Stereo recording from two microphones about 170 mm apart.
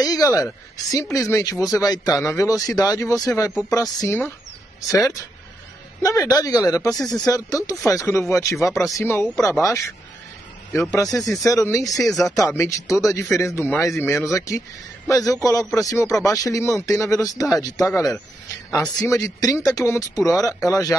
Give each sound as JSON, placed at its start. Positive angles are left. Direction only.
{"t": 0.0, "sound": "a man's voice", "side_deg": 20}